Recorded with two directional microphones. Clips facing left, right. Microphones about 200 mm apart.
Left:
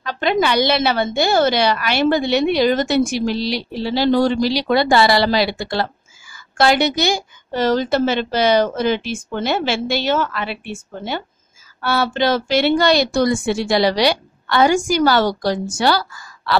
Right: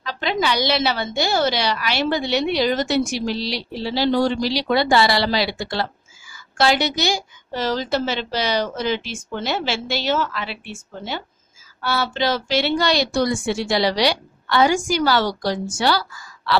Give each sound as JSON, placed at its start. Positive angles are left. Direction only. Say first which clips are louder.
{"t": 0.0, "sound": "a woman's voice", "louder": "left 5 dB", "side_deg": 50}